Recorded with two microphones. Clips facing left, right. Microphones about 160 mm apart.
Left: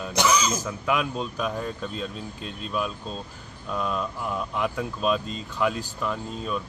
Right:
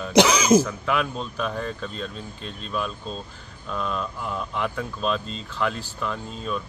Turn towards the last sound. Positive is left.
turn(degrees=5)  # may be behind; listen again after turning